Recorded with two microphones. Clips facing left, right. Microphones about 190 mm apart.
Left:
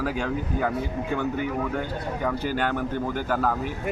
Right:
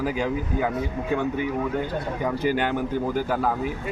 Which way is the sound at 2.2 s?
15° right (ahead or behind).